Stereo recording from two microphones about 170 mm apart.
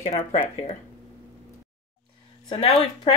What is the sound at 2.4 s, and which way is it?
Speech, 30° left (ahead or behind).